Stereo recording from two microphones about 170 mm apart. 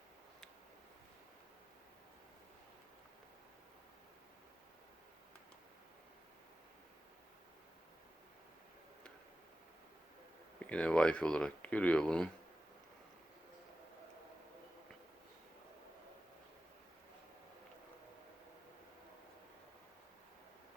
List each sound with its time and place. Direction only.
10.7 s speech: 5° left (ahead or behind)